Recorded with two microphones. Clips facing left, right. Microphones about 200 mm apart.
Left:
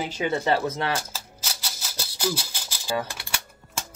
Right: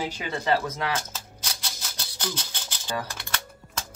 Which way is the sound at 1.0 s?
5° left (ahead or behind).